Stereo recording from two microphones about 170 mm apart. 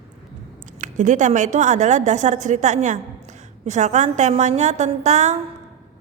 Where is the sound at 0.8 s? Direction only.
50° right (ahead or behind).